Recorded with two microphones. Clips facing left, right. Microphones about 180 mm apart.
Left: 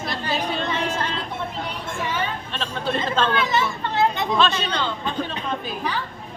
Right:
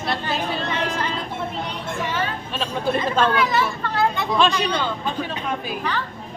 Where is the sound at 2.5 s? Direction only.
10° right (ahead or behind).